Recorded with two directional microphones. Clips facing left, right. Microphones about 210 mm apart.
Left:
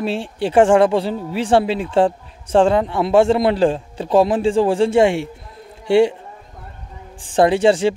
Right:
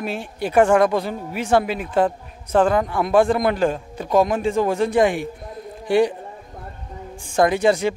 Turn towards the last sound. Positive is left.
turn(degrees=30)  # may be behind; listen again after turning